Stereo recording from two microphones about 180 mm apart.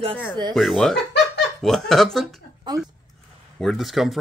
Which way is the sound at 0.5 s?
Centre (ahead or behind).